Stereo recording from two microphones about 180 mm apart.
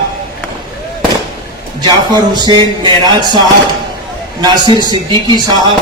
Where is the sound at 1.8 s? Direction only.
25° right (ahead or behind).